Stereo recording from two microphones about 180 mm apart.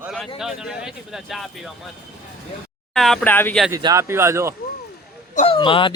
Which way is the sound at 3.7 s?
20° right (ahead or behind).